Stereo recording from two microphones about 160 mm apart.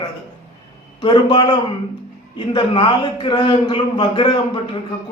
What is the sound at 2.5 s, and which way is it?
A man's voice, 30° left (ahead or behind).